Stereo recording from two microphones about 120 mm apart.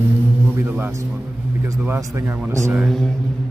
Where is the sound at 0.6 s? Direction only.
15° right (ahead or behind).